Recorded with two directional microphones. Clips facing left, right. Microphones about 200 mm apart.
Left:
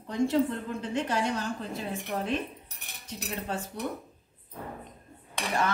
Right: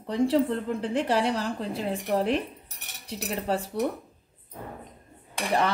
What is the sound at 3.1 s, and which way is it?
Speech, 35° right (ahead or behind).